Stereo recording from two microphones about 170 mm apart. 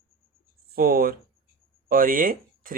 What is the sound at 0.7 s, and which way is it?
Speech, 60° right (ahead or behind).